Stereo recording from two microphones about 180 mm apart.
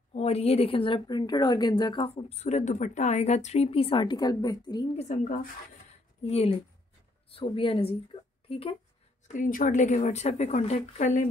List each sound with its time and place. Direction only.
0.1 s a woman's voice: 35° left (ahead or behind)
4.9 s a woman's voice: 40° left (ahead or behind)
9.3 s a woman's voice: 50° left (ahead or behind)